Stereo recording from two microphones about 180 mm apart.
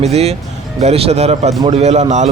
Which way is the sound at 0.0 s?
35° right (ahead or behind).